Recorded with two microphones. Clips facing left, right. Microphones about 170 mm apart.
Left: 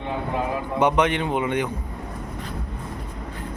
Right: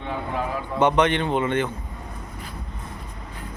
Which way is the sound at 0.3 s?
10° left (ahead or behind).